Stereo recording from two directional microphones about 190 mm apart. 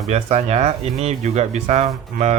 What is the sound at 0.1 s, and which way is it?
Speech, 35° right (ahead or behind).